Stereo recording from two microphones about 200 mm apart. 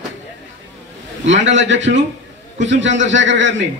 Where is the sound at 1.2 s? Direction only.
65° right (ahead or behind).